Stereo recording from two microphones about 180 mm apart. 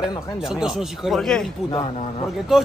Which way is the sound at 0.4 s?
5° right (ahead or behind).